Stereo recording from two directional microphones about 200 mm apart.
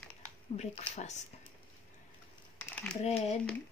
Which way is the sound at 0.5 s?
30° left (ahead or behind).